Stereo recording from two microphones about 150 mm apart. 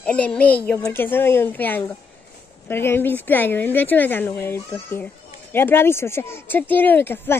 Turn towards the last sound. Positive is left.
turn(degrees=15)  # may be behind; listen again after turning